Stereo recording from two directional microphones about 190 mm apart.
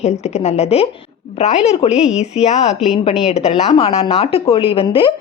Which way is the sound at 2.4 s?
35° left (ahead or behind).